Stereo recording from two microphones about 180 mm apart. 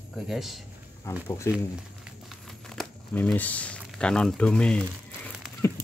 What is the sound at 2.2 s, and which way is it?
Crumpling, centre (ahead or behind).